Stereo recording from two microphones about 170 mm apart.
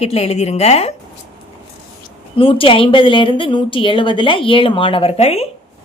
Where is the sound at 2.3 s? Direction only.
30° left (ahead or behind).